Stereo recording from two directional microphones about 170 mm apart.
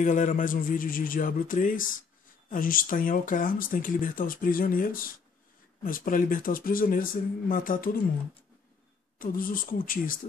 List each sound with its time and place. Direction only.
0.0 s speech: 50° left (ahead or behind)
9.2 s speech: 55° left (ahead or behind)